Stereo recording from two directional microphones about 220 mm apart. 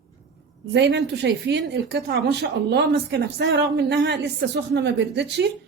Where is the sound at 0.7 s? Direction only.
50° right (ahead or behind).